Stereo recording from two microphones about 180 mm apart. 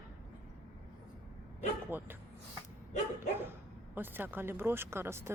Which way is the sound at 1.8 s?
10° right (ahead or behind).